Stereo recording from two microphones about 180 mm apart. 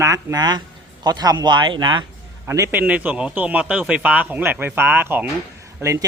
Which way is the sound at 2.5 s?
10° right (ahead or behind).